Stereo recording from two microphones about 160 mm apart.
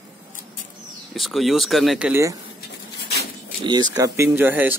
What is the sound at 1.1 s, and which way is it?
Speech, centre (ahead or behind).